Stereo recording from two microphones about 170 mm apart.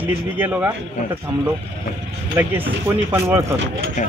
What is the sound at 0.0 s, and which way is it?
Speech, 10° right (ahead or behind).